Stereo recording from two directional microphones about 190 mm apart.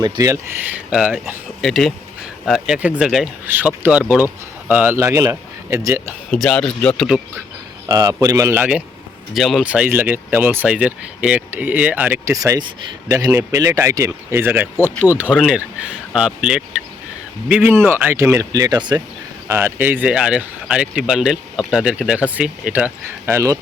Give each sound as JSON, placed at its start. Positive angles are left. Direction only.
{"t": 0.0, "sound": "speech", "side_deg": -20}
{"t": 0.9, "sound": "speech", "side_deg": -5}
{"t": 6.3, "sound": "speech", "side_deg": 5}
{"t": 7.9, "sound": "speech", "side_deg": -20}